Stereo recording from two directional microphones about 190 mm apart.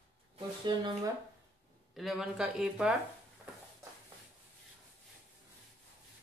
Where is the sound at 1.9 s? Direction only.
Centre (ahead or behind).